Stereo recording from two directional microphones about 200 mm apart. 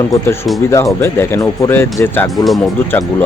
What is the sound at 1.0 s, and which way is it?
Speech, 10° left (ahead or behind).